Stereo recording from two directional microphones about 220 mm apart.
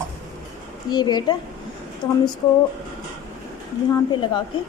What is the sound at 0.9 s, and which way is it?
Speech, 20° left (ahead or behind).